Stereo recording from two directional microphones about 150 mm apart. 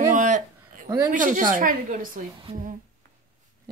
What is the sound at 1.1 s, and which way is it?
Speech, 60° right (ahead or behind).